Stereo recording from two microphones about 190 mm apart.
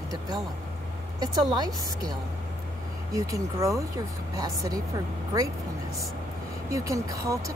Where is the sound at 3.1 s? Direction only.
15° right (ahead or behind).